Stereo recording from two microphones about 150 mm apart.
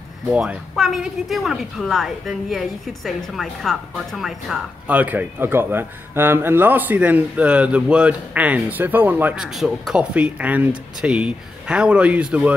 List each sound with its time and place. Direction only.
0.3 s speech: 5° right (ahead or behind)